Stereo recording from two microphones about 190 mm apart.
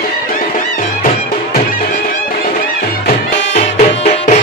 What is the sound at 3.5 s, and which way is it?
Music, 35° left (ahead or behind).